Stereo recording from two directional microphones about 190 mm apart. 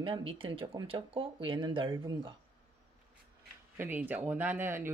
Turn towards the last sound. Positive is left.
turn(degrees=-10)  # may be behind; listen again after turning